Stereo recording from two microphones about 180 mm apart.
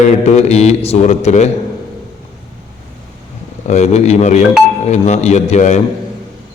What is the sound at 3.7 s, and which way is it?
A man's voice, 35° left (ahead or behind).